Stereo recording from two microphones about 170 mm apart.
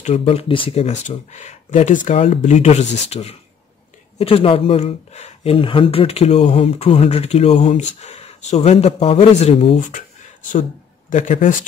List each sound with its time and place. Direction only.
0.0 s speech: 40° left (ahead or behind)
9.8 s speech: 50° left (ahead or behind)
11.1 s speech: 50° left (ahead or behind)